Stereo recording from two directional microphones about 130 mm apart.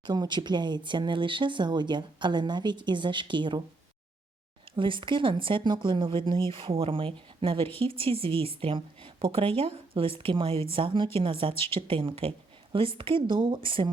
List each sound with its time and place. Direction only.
0.0 s speech: 35° right (ahead or behind)
4.8 s speech: 40° right (ahead or behind)